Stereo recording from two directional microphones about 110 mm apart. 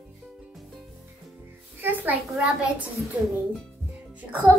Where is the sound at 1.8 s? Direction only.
15° right (ahead or behind).